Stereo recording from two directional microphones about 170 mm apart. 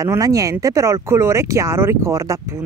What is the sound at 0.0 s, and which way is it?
Speech, 20° right (ahead or behind).